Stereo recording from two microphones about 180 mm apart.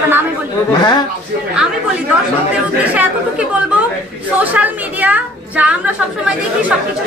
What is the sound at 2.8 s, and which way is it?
Speech, 10° right (ahead or behind).